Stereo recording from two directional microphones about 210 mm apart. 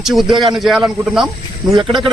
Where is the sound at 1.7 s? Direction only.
20° right (ahead or behind).